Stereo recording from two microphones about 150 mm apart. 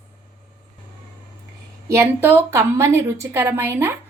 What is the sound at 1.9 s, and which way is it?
A woman's voice, 15° right (ahead or behind).